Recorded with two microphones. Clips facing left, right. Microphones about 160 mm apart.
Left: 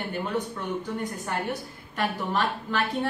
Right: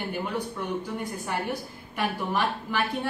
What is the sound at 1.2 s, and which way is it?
A woman's voice, 10° right (ahead or behind).